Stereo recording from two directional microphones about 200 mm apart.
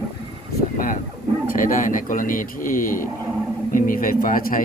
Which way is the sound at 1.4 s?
40° left (ahead or behind).